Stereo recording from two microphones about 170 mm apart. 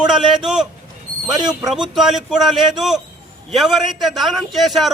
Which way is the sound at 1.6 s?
Centre (ahead or behind).